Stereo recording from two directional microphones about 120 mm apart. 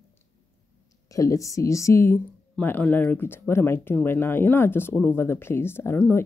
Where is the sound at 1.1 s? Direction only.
25° left (ahead or behind).